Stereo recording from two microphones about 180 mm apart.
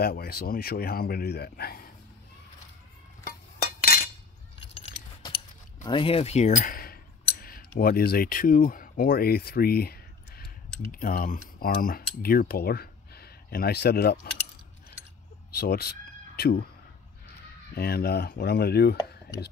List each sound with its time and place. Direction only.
0.0 s speech: 60° left (ahead or behind)
3.3 s chink: 55° left (ahead or behind)
5.9 s speech: 30° left (ahead or behind); by 14.1 s 60° left (ahead or behind)
15.5 s speech: 60° left (ahead or behind)
17.7 s speech: 60° left (ahead or behind)